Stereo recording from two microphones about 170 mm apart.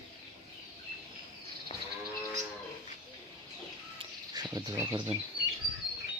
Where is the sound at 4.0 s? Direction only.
25° right (ahead or behind).